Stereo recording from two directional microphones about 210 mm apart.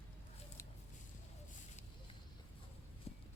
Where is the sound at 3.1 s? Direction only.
30° left (ahead or behind).